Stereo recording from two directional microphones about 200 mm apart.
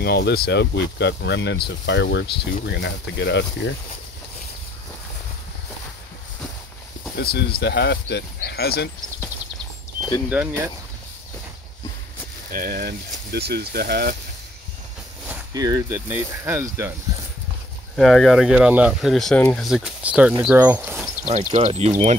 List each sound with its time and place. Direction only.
0.0 s speech: 55° left (ahead or behind)
7.2 s speech: 55° left (ahead or behind)
10.4 s speech: 5° right (ahead or behind)
12.4 s speech: 45° right (ahead or behind)
15.5 s speech: 20° right (ahead or behind)
17.9 s speech: centre (ahead or behind)
21.3 s speech: 30° right (ahead or behind)